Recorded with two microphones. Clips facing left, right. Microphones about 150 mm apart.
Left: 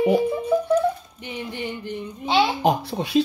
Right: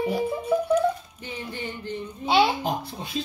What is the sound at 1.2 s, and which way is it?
Music, 15° left (ahead or behind).